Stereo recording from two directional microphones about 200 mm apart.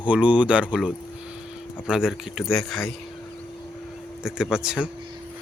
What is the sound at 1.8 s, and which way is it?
Speech, 5° right (ahead or behind).